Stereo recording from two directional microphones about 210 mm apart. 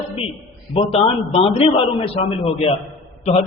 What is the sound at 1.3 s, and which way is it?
A man's voice, 25° left (ahead or behind).